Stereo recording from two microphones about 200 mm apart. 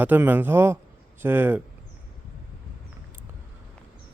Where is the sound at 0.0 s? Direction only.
10° right (ahead or behind).